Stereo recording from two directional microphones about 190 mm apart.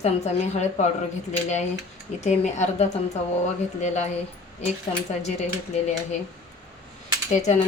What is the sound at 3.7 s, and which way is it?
Speech, 35° left (ahead or behind).